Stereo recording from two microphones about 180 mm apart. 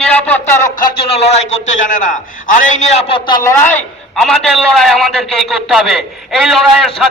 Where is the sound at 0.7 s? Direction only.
55° left (ahead or behind).